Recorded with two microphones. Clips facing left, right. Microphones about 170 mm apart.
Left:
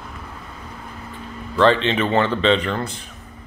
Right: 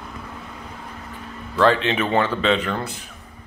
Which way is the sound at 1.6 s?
10° right (ahead or behind).